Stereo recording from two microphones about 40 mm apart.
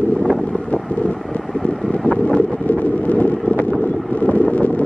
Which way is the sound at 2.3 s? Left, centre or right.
Left.